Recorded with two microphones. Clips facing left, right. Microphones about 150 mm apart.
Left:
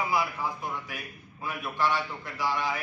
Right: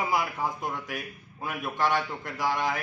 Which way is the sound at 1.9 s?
50° right (ahead or behind).